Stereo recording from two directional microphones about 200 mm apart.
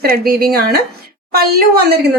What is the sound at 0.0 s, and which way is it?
Speech, 50° right (ahead or behind).